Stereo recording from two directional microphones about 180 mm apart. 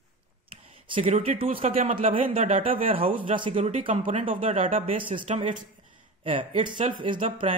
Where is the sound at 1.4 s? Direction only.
30° right (ahead or behind).